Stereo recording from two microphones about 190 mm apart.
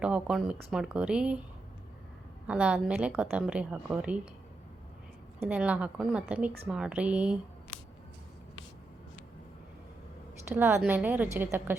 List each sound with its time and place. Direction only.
0.0 s a woman's voice: 5° right (ahead or behind)
2.5 s a woman's voice: 5° right (ahead or behind)
5.4 s a woman's voice: 5° right (ahead or behind)
10.5 s a woman's voice: 10° right (ahead or behind)